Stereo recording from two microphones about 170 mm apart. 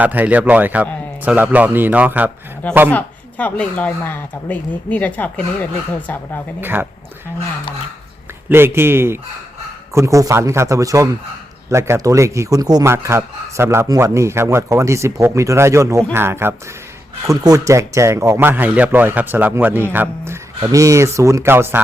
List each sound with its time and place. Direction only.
0.0 s a man's voice: 10° right (ahead or behind)
2.9 s speech: 10° left (ahead or behind)
6.6 s a man's voice: 10° right (ahead or behind)
8.4 s a man's voice: 15° right (ahead or behind)